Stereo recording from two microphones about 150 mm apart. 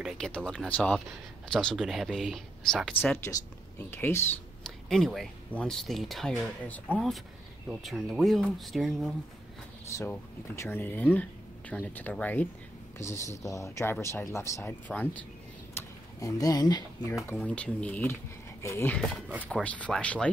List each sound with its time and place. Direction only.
0.0 s speech: 5° left (ahead or behind)
4.6 s speech: 5° left (ahead or behind)
9.8 s speech: 20° left (ahead or behind)
15.7 s speech: 20° left (ahead or behind)
17.4 s speech: 10° left (ahead or behind)
18.9 s speech: centre (ahead or behind)